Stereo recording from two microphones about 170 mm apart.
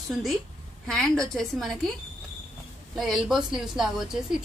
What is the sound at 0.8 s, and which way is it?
A woman's voice, 5° left (ahead or behind).